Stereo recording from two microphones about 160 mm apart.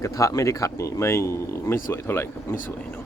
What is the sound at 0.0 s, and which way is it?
Speech, 20° left (ahead or behind).